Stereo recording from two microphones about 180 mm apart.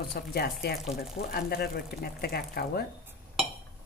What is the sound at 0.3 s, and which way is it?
Speech, 60° left (ahead or behind).